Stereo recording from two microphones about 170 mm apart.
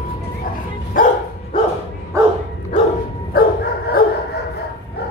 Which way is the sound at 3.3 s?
55° left (ahead or behind).